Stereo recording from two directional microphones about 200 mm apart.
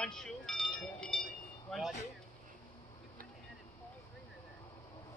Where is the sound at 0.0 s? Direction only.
5° left (ahead or behind).